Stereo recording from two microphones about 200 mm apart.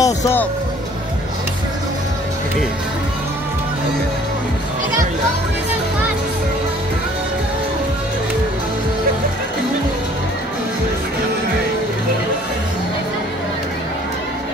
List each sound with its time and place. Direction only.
0.0 s speech: 10° left (ahead or behind)